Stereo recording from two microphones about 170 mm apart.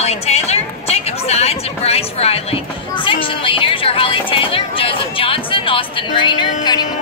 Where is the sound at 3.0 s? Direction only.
30° left (ahead or behind).